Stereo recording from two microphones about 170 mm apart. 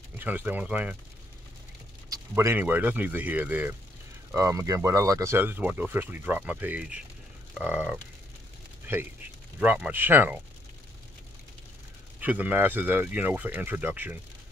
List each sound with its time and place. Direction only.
0.2 s speech: 10° right (ahead or behind)
2.0 s speech: 15° right (ahead or behind)
9.6 s speech: 10° right (ahead or behind)
12.2 s speech: 10° right (ahead or behind)